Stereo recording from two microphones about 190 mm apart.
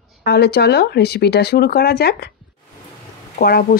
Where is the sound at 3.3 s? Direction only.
55° left (ahead or behind).